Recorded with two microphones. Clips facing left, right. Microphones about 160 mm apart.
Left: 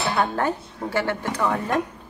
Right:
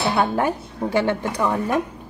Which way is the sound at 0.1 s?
10° right (ahead or behind).